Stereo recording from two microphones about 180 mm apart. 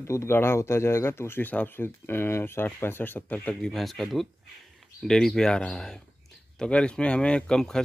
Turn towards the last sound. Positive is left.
turn(degrees=5)  # may be behind; listen again after turning